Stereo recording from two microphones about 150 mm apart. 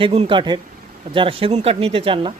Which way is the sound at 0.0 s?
40° right (ahead or behind).